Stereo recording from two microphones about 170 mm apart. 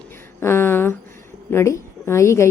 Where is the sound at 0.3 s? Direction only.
15° left (ahead or behind).